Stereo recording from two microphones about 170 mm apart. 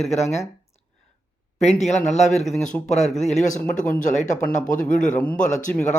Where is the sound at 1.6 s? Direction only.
40° left (ahead or behind).